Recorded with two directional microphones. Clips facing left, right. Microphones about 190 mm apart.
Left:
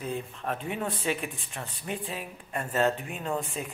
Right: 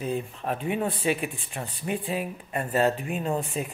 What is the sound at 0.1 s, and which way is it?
Speech, 15° right (ahead or behind).